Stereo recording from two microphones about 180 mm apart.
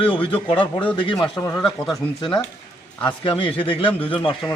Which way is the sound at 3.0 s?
25° left (ahead or behind).